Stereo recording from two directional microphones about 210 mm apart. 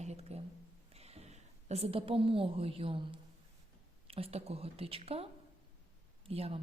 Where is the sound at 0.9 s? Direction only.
30° right (ahead or behind).